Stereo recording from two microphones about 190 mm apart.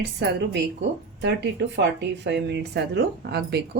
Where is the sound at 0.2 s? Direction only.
60° right (ahead or behind).